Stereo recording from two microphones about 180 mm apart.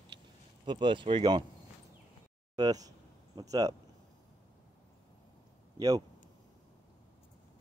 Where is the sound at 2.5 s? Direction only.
20° right (ahead or behind).